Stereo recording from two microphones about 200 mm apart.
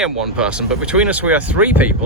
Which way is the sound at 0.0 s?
5° right (ahead or behind).